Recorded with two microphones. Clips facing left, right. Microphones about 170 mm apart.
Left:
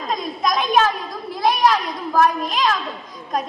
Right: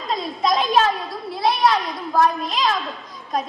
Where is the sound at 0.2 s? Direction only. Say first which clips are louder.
Right 4 dB; 30° right (ahead or behind).